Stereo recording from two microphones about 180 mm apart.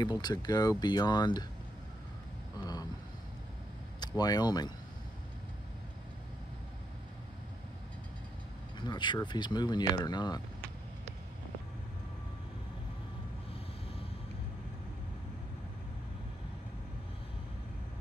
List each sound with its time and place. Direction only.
0.0 s speech: 25° left (ahead or behind)
2.6 s vehicle: 20° left (ahead or behind)
4.2 s speech: 20° left (ahead or behind)
8.7 s speech: 25° left (ahead or behind)